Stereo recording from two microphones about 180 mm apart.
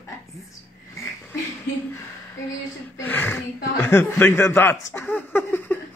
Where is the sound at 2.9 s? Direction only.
10° left (ahead or behind).